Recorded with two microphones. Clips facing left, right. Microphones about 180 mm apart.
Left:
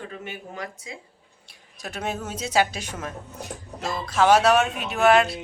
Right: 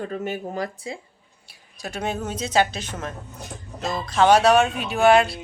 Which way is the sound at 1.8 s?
Centre (ahead or behind).